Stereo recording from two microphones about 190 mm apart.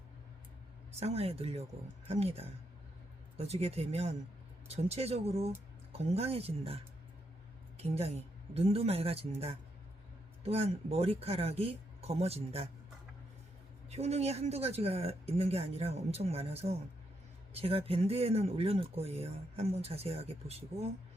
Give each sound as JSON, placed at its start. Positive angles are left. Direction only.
{"t": 0.9, "sound": "speech", "side_deg": -30}
{"t": 10.4, "sound": "speech", "side_deg": -30}
{"t": 13.9, "sound": "speech", "side_deg": -35}